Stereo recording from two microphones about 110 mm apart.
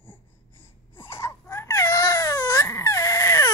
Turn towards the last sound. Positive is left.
turn(degrees=30)  # may be behind; listen again after turning